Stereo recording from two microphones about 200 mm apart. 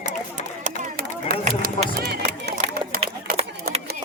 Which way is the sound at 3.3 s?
30° right (ahead or behind).